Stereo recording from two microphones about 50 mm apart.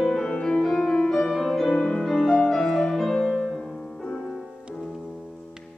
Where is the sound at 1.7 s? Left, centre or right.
Centre.